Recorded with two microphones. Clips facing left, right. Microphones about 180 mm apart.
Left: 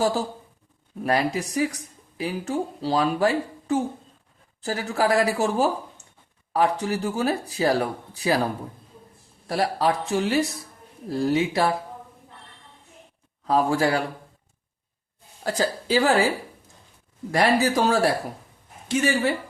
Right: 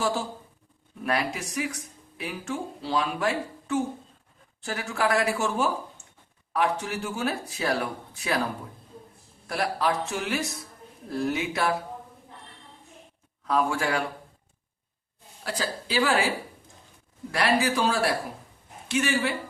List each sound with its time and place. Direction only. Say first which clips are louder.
0.0 s speech: left 4 dB; 40° left (ahead or behind)
9.5 s speech: left 4 dB; 30° left (ahead or behind)
13.5 s speech: left 4 dB; 35° left (ahead or behind)
15.4 s a woman's voice: left 7 dB; 45° left (ahead or behind)
17.3 s speech: left 4 dB; 40° left (ahead or behind)